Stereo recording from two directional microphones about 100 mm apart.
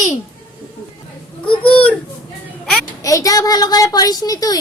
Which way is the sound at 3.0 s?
35° left (ahead or behind).